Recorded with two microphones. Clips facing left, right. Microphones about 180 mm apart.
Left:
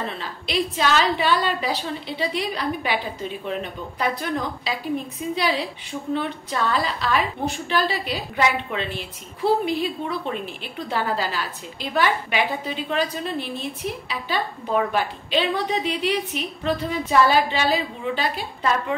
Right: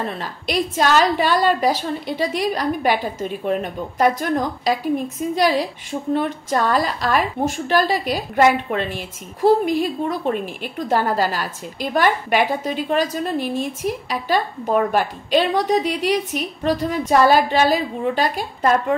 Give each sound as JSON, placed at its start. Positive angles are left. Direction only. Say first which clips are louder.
{"t": 0.2, "sound": "a woman's voice", "louder": "right 3 dB", "side_deg": -45}